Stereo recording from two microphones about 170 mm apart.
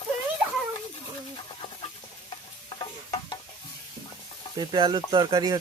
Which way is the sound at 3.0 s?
25° left (ahead or behind).